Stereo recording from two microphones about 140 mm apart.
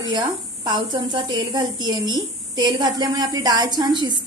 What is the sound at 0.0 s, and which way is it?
A woman's voice, 35° right (ahead or behind).